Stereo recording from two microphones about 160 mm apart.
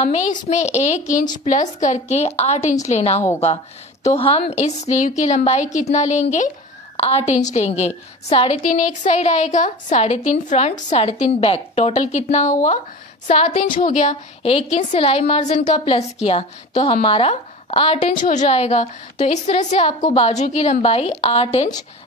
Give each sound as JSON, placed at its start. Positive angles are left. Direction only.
{"t": 0.0, "sound": "a woman's voice", "side_deg": 45}
{"t": 13.3, "sound": "a woman's voice", "side_deg": 40}
{"t": 13.6, "sound": "a woman's voice", "side_deg": 60}
{"t": 18.1, "sound": "a woman's voice", "side_deg": 50}
{"t": 20.0, "sound": "a woman's voice", "side_deg": 25}
{"t": 20.2, "sound": "a woman's voice", "side_deg": 45}